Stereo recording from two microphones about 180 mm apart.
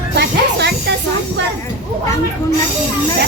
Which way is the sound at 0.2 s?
70° right (ahead or behind).